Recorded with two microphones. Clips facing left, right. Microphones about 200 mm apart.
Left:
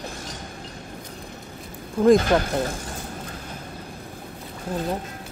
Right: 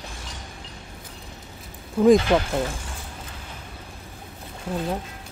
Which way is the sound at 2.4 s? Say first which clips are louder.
Left 1 dB; 45° left (ahead or behind).